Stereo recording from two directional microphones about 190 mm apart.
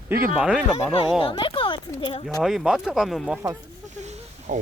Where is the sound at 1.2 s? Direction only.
25° left (ahead or behind).